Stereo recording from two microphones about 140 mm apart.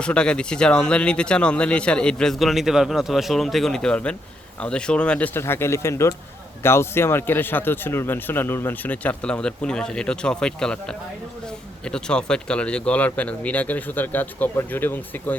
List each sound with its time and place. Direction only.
0.0 s speech: 5° left (ahead or behind)